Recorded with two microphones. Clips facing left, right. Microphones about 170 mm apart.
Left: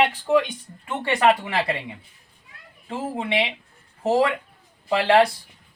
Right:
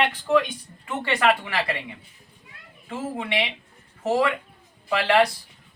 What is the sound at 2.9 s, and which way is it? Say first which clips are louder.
Speech: left 2 dB; 25° left (ahead or behind).